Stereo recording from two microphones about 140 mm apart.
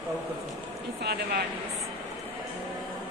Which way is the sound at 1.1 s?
90° right.